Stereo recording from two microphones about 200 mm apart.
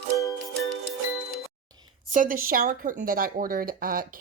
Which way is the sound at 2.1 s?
45° right (ahead or behind).